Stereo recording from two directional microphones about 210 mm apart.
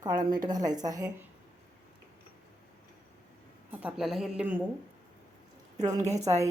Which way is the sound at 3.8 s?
Centre (ahead or behind).